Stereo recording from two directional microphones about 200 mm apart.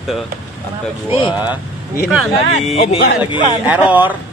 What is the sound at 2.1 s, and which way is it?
Speech, centre (ahead or behind).